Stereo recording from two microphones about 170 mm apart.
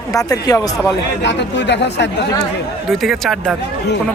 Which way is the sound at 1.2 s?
90° left.